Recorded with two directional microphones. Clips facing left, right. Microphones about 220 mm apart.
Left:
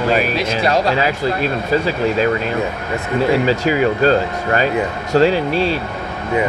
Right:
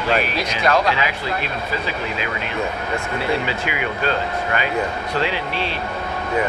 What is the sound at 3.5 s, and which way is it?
Speech, 40° left (ahead or behind).